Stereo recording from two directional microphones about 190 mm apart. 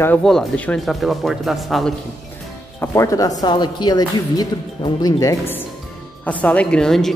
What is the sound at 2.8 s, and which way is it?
Speech, 15° left (ahead or behind).